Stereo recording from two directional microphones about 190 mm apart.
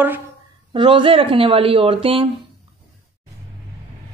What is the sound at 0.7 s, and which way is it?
Speech, 25° right (ahead or behind).